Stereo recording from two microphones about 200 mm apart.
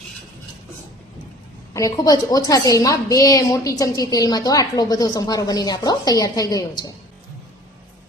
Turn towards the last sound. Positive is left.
turn(degrees=20)  # may be behind; listen again after turning